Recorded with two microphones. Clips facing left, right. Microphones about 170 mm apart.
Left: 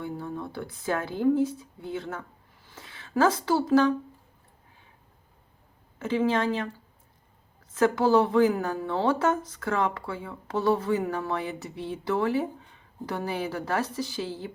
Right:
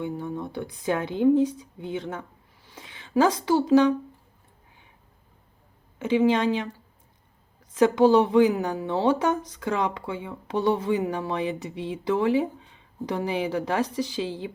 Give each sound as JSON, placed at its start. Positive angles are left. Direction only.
{"t": 0.0, "sound": "speech", "side_deg": -20}
{"t": 6.0, "sound": "a woman's voice", "side_deg": -15}
{"t": 7.7, "sound": "a woman's voice", "side_deg": -15}